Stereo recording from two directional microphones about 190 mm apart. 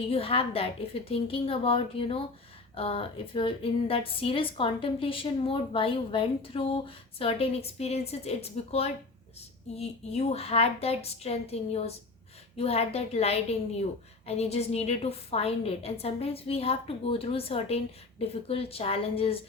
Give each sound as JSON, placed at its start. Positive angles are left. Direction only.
{"t": 0.1, "sound": "a woman's voice", "side_deg": 30}